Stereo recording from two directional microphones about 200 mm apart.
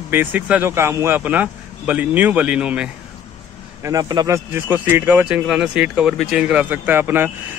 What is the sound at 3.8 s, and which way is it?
Speech, 20° right (ahead or behind).